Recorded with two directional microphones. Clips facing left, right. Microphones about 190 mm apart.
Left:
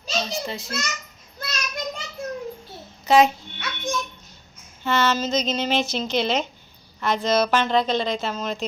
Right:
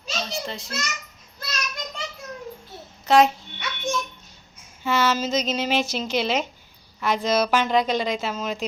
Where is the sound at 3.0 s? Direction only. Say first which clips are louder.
Left 1 dB; centre (ahead or behind).